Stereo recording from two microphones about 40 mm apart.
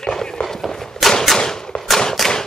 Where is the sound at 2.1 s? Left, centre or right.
Centre.